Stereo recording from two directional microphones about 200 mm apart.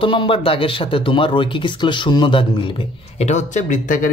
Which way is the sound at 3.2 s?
35° left (ahead or behind).